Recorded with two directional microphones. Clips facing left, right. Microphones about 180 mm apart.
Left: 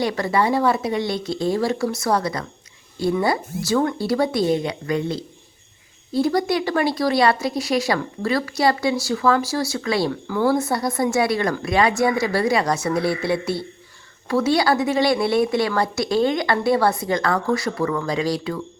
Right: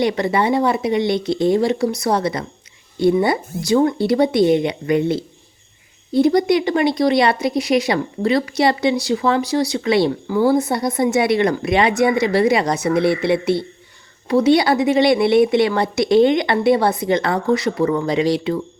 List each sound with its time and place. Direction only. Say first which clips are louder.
0.0 s a woman's voice: right 3 dB; 20° right (ahead or behind)
6.2 s a woman's voice: right 5 dB; 20° right (ahead or behind)